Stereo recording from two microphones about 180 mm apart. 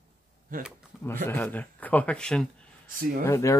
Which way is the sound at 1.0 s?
10° left (ahead or behind).